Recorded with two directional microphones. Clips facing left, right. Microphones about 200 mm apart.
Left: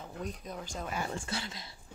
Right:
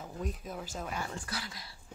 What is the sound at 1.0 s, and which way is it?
Speech, 25° left (ahead or behind).